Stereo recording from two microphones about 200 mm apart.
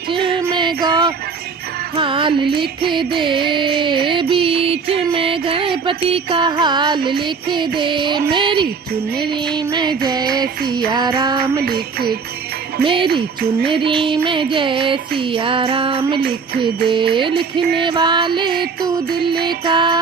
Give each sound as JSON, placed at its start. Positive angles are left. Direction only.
{"t": 0.1, "sound": "music", "side_deg": -25}
{"t": 7.0, "sound": "music", "side_deg": -50}
{"t": 7.5, "sound": "music", "side_deg": -25}
{"t": 11.6, "sound": "music", "side_deg": -50}
{"t": 12.8, "sound": "music", "side_deg": -25}
{"t": 18.6, "sound": "music", "side_deg": -50}
{"t": 19.5, "sound": "music", "side_deg": -25}